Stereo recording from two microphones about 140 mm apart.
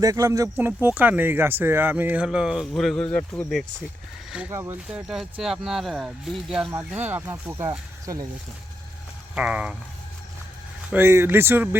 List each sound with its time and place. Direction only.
0.0 s speech: 25° right (ahead or behind); by 3.6 s 10° left (ahead or behind)
4.4 s speech: 20° right (ahead or behind)
4.9 s speech: 5° right (ahead or behind)
6.7 s speech: 15° right (ahead or behind)
9.3 s speech: 10° right (ahead or behind)
10.9 s speech: 15° right (ahead or behind)